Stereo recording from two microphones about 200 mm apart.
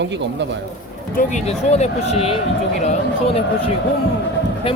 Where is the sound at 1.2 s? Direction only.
35° left (ahead or behind).